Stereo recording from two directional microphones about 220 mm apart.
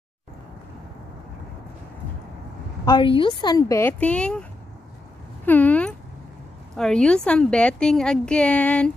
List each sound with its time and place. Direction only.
2.8 s speech: 20° left (ahead or behind); by 4.5 s 5° left (ahead or behind)
5.4 s a sound: 10° left (ahead or behind)
6.8 s a woman's voice: 5° left (ahead or behind)